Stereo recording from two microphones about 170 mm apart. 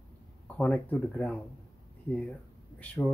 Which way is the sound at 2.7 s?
5° left (ahead or behind).